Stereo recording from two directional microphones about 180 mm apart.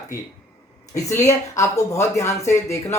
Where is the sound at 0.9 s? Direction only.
20° left (ahead or behind).